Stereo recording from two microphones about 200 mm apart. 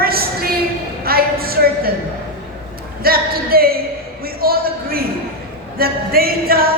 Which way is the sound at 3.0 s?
50° right (ahead or behind).